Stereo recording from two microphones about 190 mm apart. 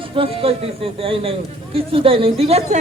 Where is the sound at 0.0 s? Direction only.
30° right (ahead or behind).